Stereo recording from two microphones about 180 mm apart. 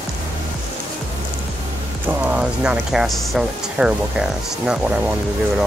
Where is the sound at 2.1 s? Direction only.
5° right (ahead or behind).